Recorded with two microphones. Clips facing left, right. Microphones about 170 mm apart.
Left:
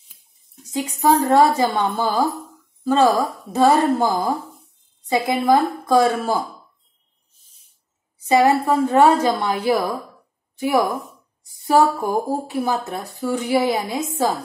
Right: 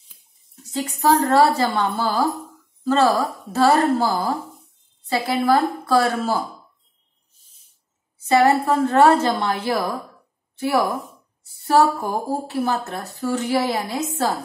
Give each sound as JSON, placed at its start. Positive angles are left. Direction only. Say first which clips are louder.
{"t": 0.7, "sound": "a woman's voice", "louder": "left 1 dB", "side_deg": 15}
{"t": 5.1, "sound": "a woman's voice", "louder": "left 2 dB", "side_deg": 20}
{"t": 8.2, "sound": "a woman's voice", "louder": "left 1 dB", "side_deg": 10}